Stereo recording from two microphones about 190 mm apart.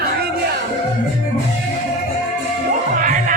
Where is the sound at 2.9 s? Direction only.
45° right (ahead or behind).